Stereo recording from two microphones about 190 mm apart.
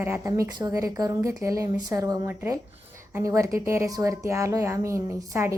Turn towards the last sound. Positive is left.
turn(degrees=-15)  # may be behind; listen again after turning